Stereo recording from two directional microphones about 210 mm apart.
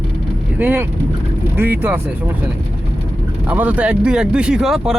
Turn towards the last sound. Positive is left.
turn(degrees=0)  # may be behind; listen again after turning